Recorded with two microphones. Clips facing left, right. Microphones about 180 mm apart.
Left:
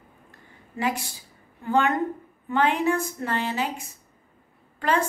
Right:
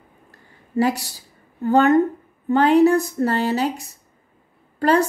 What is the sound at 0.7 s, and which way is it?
A woman's voice, 40° right (ahead or behind).